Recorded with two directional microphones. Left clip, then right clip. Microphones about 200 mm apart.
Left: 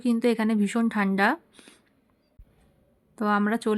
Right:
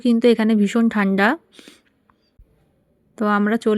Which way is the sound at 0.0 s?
20° right (ahead or behind).